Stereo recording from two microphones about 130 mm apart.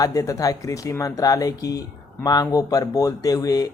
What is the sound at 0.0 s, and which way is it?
Speech, 25° left (ahead or behind).